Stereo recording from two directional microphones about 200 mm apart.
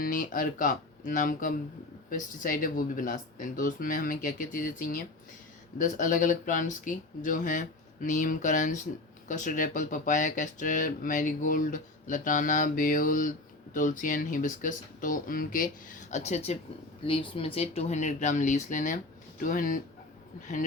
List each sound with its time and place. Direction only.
0.0 s speech: 40° left (ahead or behind)